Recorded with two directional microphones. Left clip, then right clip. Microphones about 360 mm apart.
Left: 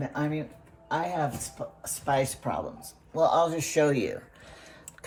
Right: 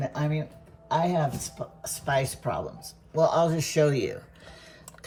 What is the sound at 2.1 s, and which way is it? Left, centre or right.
Speech, centre.